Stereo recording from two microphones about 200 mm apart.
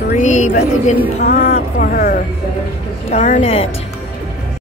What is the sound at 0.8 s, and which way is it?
A woman's voice, 50° left (ahead or behind).